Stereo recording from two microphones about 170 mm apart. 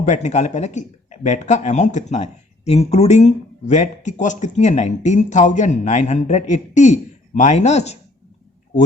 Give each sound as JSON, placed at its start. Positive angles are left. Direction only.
{"t": 0.1, "sound": "speech", "side_deg": 45}